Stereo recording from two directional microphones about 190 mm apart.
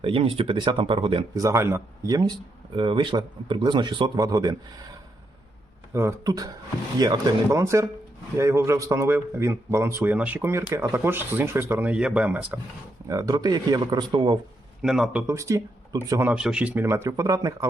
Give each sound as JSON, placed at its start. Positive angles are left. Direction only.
{"t": 0.0, "sound": "speech", "side_deg": -30}
{"t": 13.1, "sound": "speech", "side_deg": -20}
{"t": 14.8, "sound": "a man's voice", "side_deg": 0}
{"t": 15.3, "sound": "speech", "side_deg": -15}